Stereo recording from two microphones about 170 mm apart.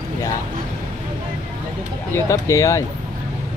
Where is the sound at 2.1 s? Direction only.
20° left (ahead or behind).